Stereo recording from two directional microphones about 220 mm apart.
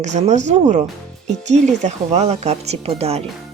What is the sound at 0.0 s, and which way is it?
Speech, 30° right (ahead or behind).